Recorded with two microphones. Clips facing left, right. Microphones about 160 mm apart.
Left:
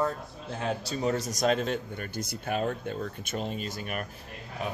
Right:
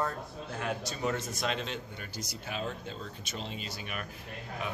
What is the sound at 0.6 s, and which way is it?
A man's voice, 35° left (ahead or behind).